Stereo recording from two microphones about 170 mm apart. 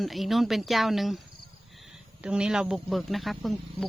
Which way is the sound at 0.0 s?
Centre (ahead or behind).